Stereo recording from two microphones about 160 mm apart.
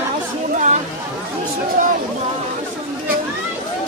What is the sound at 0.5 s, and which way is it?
Chatter, 50° right (ahead or behind).